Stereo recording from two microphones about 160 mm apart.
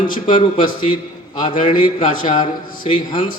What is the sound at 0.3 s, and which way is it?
A man's voice, 30° left (ahead or behind).